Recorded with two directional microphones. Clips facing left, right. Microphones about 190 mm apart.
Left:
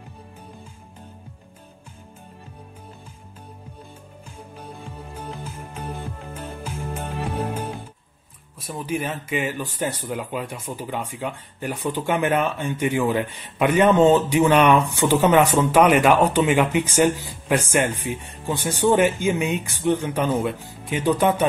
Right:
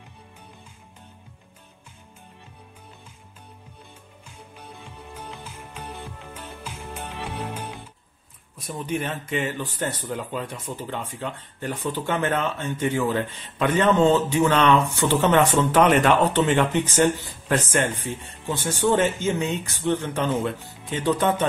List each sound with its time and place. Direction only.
4.6 s music: 40° left (ahead or behind)
8.5 s speech: 5° left (ahead or behind)